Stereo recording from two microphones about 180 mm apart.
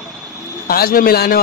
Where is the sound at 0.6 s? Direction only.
55° left (ahead or behind).